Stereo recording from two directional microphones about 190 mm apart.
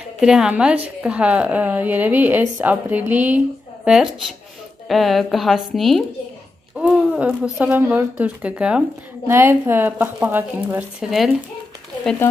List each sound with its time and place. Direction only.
0.2 s a woman's voice: 5° right (ahead or behind)
11.1 s a woman's voice: centre (ahead or behind)